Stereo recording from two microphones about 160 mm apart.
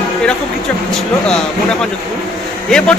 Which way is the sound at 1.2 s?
5° left (ahead or behind).